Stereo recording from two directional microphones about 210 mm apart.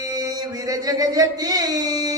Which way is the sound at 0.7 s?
15° right (ahead or behind).